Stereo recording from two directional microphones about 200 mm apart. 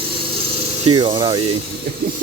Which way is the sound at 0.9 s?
25° right (ahead or behind).